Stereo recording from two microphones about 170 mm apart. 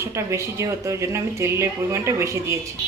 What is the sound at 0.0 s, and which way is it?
A woman's voice, 15° right (ahead or behind).